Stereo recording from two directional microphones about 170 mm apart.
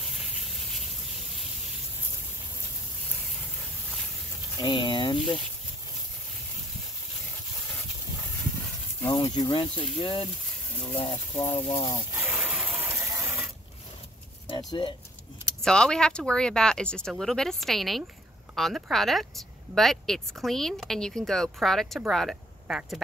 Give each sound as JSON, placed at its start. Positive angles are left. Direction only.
{"t": 4.6, "sound": "speech", "side_deg": 30}
{"t": 9.1, "sound": "speech", "side_deg": 25}
{"t": 12.2, "sound": "a sound", "side_deg": -10}
{"t": 14.7, "sound": "speech", "side_deg": 25}
{"t": 15.6, "sound": "speech", "side_deg": 5}